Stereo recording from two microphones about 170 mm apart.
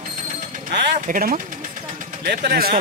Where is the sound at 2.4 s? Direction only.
60° right (ahead or behind).